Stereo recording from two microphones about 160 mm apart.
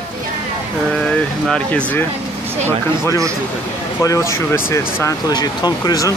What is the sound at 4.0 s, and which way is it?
Speech, 20° left (ahead or behind).